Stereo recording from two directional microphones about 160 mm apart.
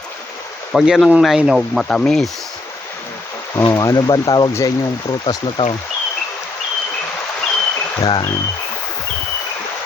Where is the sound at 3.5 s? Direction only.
20° left (ahead or behind).